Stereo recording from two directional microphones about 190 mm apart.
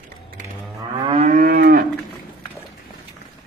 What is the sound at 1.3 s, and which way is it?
Moo, 50° right (ahead or behind).